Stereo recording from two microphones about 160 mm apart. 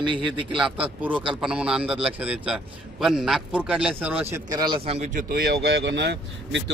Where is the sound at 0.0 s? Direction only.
30° right (ahead or behind).